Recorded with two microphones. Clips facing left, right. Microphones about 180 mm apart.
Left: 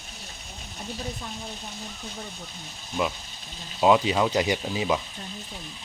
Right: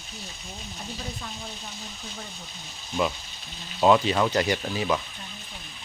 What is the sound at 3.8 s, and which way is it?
Speech, 10° left (ahead or behind).